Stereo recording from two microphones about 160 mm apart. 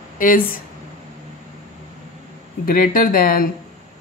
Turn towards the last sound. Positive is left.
turn(degrees=60)  # may be behind; listen again after turning